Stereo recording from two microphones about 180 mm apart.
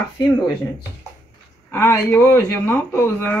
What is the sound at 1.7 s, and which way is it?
Speech, 15° left (ahead or behind).